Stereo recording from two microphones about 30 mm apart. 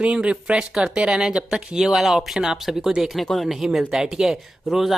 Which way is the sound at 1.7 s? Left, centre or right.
Centre.